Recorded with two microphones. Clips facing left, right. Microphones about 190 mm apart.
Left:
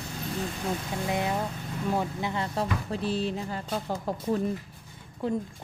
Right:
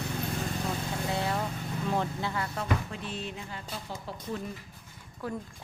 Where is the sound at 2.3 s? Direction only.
30° left (ahead or behind); by 4.4 s 45° left (ahead or behind).